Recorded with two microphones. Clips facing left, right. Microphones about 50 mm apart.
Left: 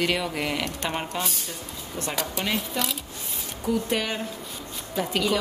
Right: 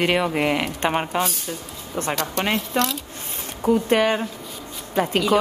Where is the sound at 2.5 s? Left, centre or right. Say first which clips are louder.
Right 6 dB; centre.